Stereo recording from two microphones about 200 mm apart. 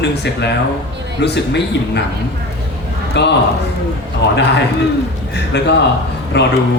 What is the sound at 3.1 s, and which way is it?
Speech, 60° left (ahead or behind).